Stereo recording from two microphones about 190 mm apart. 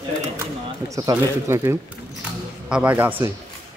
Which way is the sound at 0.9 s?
15° right (ahead or behind).